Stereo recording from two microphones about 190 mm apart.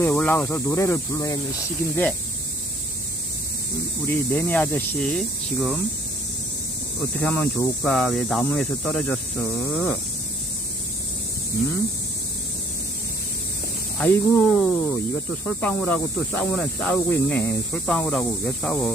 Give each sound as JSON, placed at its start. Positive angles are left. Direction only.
{"t": 0.0, "sound": "speech", "side_deg": 10}
{"t": 4.0, "sound": "speech", "side_deg": 10}
{"t": 7.2, "sound": "speech", "side_deg": 10}
{"t": 14.0, "sound": "speech", "side_deg": 5}